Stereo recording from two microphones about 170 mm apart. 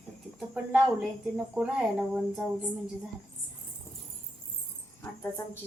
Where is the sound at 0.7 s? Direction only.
5° right (ahead or behind).